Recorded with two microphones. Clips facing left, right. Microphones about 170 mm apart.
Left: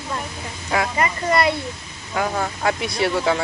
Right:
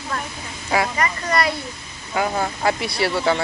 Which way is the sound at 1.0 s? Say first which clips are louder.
Left 2 dB; 25° left (ahead or behind).